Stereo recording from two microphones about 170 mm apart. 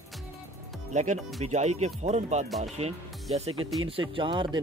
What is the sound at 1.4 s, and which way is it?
Speech, 40° right (ahead or behind).